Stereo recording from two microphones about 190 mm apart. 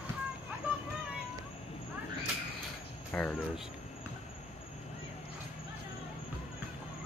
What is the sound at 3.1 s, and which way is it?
Speech, 5° left (ahead or behind).